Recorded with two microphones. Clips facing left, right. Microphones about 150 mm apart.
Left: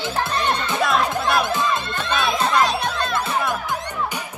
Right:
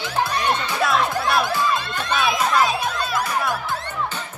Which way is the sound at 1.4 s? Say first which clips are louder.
Even; 20° left (ahead or behind).